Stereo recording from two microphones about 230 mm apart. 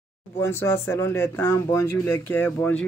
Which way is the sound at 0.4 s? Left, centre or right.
Centre.